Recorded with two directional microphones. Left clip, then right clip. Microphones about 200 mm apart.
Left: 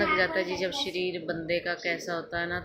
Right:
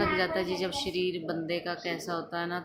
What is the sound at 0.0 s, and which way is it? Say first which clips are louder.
Speech: left 3 dB; 15° right (ahead or behind).